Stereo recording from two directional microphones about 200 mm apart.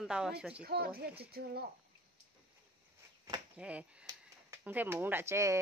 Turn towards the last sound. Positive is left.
turn(degrees=-15)  # may be behind; listen again after turning